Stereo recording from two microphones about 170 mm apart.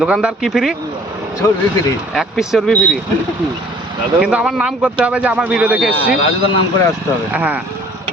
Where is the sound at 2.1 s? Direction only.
Centre (ahead or behind).